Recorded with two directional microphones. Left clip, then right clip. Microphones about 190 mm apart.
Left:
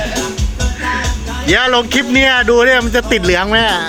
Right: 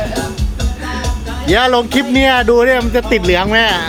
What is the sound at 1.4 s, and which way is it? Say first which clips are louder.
Speech: even; 10° right (ahead or behind).